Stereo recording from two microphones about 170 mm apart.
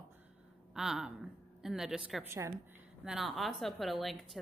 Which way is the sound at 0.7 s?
5° right (ahead or behind).